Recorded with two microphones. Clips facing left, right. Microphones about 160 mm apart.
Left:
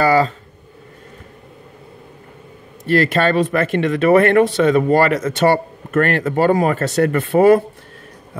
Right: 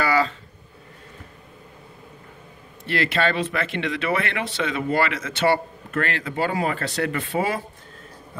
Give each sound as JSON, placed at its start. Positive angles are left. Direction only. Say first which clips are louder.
{"t": 0.0, "sound": "speech", "louder": "left 7 dB", "side_deg": 40}
{"t": 2.8, "sound": "speech", "louder": "left 7 dB", "side_deg": 45}